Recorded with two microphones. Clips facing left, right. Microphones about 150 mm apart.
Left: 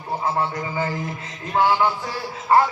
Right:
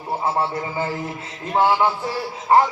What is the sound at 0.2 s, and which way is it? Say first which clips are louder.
Music: right 1 dB; 25° right (ahead or behind).